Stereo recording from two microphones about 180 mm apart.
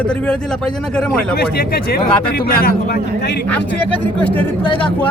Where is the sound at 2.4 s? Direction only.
55° left (ahead or behind).